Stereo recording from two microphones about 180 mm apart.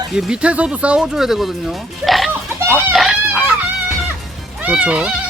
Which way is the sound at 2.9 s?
Centre (ahead or behind).